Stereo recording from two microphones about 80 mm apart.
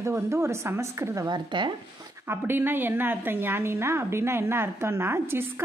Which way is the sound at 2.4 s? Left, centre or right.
Right.